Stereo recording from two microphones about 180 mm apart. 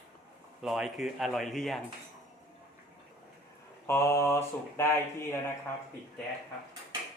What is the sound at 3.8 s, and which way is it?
Speech, 15° left (ahead or behind).